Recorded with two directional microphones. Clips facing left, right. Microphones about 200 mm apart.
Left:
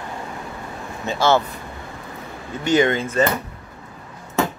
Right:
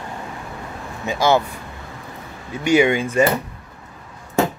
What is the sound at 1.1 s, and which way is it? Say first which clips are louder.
Speech: right 1 dB; 15° right (ahead or behind).